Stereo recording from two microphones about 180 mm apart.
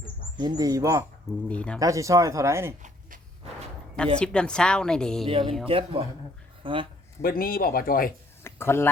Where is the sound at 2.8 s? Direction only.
50° right (ahead or behind).